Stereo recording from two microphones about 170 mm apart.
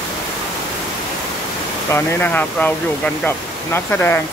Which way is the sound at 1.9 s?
15° left (ahead or behind).